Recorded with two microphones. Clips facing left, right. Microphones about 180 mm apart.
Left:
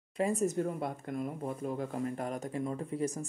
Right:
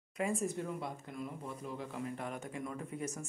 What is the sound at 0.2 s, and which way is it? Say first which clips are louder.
Speech: left 6 dB; 40° left (ahead or behind).